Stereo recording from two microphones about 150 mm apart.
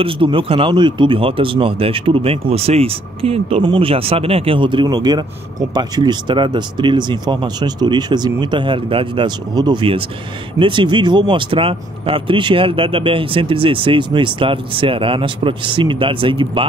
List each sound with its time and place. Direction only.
0.0 s speech: 35° right (ahead or behind)